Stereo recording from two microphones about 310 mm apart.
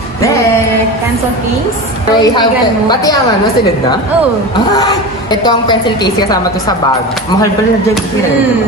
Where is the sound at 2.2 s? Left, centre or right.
Centre.